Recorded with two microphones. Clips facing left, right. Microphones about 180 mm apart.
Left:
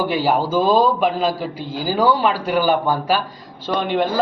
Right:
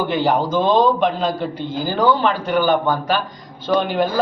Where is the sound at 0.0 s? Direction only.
5° left (ahead or behind).